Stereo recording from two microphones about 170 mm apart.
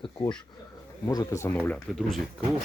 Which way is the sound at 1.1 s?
20° left (ahead or behind).